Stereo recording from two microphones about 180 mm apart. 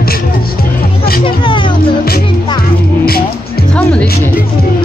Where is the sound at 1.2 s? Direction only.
25° left (ahead or behind).